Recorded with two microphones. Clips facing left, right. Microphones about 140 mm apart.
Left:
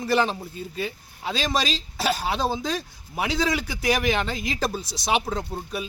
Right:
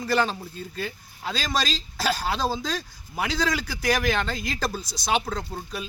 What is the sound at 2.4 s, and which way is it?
Speech, 20° left (ahead or behind).